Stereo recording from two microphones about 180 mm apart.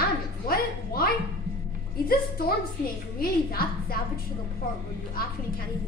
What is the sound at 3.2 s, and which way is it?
Speech, 55° left (ahead or behind).